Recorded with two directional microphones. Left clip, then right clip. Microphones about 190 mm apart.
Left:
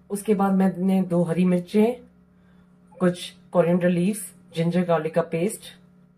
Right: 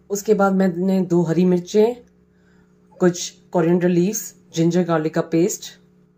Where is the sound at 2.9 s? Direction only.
25° right (ahead or behind).